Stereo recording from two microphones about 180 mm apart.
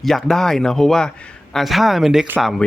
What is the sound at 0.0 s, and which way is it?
Speech, centre (ahead or behind).